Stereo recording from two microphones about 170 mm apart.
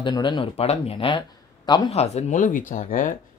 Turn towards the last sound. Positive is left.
turn(degrees=50)  # may be behind; listen again after turning